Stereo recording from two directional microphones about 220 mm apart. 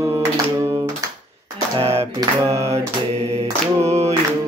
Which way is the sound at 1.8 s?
25° right (ahead or behind).